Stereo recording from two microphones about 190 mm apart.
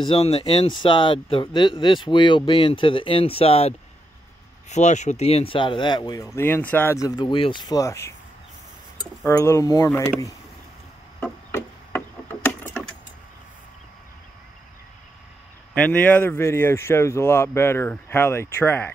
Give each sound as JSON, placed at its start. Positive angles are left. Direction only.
{"t": 0.0, "sound": "speech", "side_deg": 30}
{"t": 9.2, "sound": "speech", "side_deg": 15}
{"t": 11.1, "sound": "a sound", "side_deg": 10}
{"t": 15.7, "sound": "speech", "side_deg": 5}